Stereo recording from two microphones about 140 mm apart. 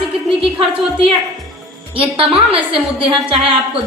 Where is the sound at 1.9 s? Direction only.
40° right (ahead or behind).